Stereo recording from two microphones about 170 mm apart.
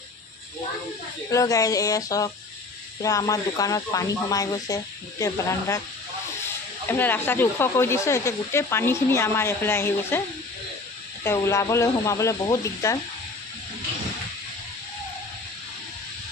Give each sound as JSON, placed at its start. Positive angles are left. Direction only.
{"t": 1.3, "sound": "speech", "side_deg": 20}
{"t": 6.8, "sound": "speech", "side_deg": 10}